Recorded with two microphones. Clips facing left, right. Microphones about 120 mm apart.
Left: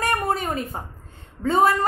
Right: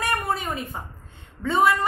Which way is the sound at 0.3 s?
40° left (ahead or behind).